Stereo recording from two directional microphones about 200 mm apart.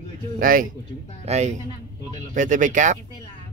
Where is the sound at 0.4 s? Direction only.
45° right (ahead or behind).